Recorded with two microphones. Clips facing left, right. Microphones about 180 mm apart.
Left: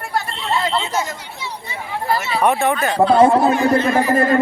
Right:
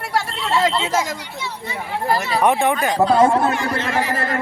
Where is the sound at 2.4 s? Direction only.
15° right (ahead or behind).